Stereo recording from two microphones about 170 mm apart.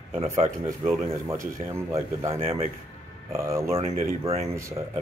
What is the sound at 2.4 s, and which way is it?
Speech, 40° right (ahead or behind).